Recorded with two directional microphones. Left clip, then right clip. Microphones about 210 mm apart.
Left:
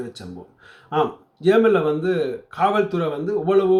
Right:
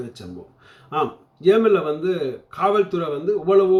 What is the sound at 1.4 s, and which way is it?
Speech, 15° left (ahead or behind).